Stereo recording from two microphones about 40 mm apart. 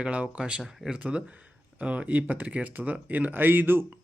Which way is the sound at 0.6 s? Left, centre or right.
Centre.